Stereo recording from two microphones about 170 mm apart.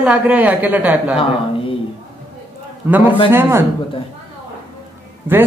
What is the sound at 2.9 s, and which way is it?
Speech, 10° right (ahead or behind).